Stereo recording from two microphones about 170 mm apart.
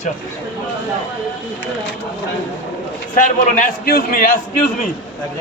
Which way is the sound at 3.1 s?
50° left (ahead or behind).